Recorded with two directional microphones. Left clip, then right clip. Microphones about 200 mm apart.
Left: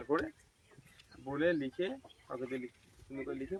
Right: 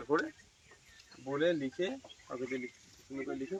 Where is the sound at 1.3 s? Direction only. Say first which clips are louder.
Right 1 dB; 25° left (ahead or behind).